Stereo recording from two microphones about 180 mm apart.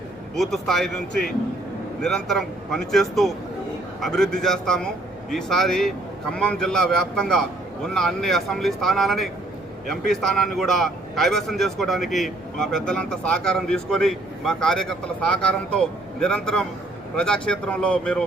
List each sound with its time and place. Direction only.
0.3 s speech: centre (ahead or behind)